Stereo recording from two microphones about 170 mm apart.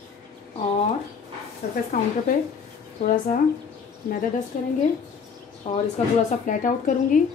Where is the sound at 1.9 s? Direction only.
55° left (ahead or behind).